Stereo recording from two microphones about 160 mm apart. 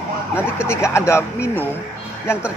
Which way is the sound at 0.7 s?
15° left (ahead or behind).